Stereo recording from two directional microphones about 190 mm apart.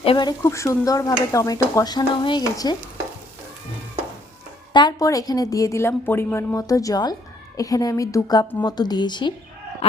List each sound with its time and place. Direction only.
0.0 s speech: 25° left (ahead or behind)
4.7 s a woman's voice: 20° left (ahead or behind)